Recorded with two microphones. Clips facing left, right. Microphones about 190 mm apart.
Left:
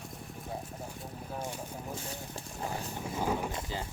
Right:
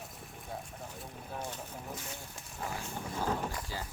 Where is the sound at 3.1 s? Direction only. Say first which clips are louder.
Left 2 dB; 10° left (ahead or behind).